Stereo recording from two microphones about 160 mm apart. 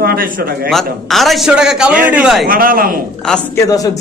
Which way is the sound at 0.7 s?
Centre (ahead or behind).